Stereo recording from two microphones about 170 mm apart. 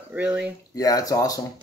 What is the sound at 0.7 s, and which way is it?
Speech, 20° left (ahead or behind).